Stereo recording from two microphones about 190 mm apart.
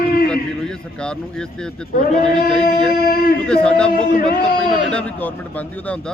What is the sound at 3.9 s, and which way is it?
Speech, 45° left (ahead or behind).